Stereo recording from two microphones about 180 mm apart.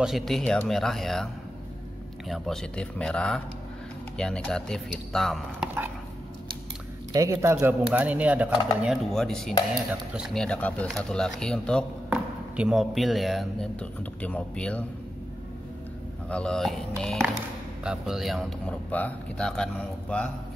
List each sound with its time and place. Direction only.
0.0 s speech: centre (ahead or behind)
7.1 s speech: 15° right (ahead or behind)
8.8 s speech: centre (ahead or behind)
16.3 s speech: 5° left (ahead or behind)